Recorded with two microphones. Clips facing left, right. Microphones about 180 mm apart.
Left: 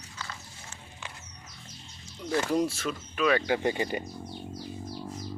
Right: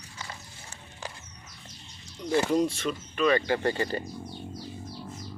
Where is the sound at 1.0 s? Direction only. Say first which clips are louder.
Right 5 dB; 35° right (ahead or behind).